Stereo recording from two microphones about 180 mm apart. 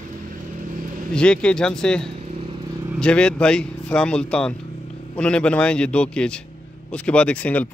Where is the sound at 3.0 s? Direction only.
5° left (ahead or behind).